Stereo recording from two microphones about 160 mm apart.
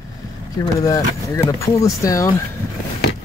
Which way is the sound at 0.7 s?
20° left (ahead or behind).